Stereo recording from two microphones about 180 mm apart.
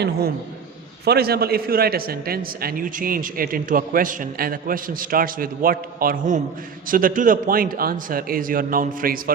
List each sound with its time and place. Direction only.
1.0 s a man's voice: 60° right (ahead or behind)